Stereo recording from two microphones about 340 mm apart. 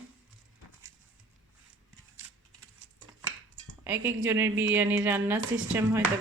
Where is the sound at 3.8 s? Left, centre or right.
Centre.